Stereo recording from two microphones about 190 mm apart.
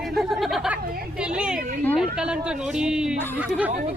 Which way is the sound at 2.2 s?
5° right (ahead or behind).